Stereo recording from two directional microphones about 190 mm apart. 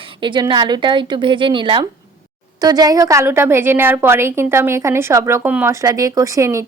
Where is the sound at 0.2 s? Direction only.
25° right (ahead or behind).